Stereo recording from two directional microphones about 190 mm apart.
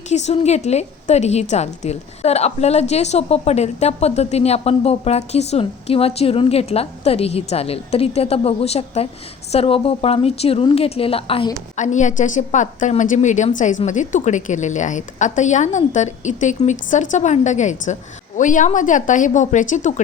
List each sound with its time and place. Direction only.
0.1 s a woman's voice: 35° left (ahead or behind)
11.8 s a woman's voice: 40° left (ahead or behind)